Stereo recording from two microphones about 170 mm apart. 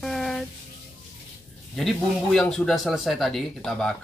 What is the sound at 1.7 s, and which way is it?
Speech, centre (ahead or behind).